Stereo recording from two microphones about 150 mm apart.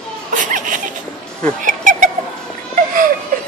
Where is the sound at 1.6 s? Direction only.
60° right (ahead or behind).